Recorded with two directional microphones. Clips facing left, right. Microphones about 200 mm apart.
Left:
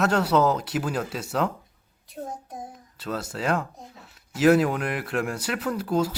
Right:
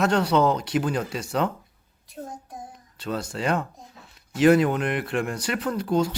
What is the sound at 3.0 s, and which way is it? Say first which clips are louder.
Speech: right 2 dB; 5° left (ahead or behind).